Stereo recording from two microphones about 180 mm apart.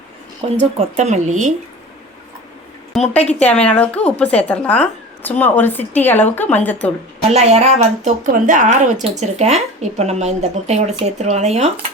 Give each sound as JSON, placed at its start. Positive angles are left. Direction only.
{"t": 0.4, "sound": "speech", "side_deg": -35}
{"t": 2.9, "sound": "a woman's voice", "side_deg": 5}
{"t": 7.3, "sound": "speech", "side_deg": -35}